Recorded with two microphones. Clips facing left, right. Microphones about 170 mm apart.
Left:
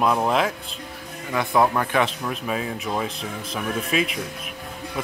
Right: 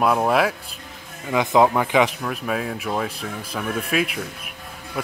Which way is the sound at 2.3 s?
Centre (ahead or behind).